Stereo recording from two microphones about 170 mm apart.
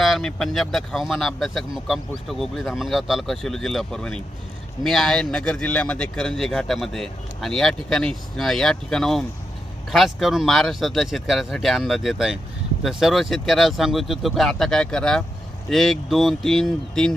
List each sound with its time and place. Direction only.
0.0 s speech: centre (ahead or behind)